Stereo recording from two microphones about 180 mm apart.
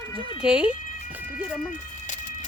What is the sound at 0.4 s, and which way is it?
Speech, 5° right (ahead or behind).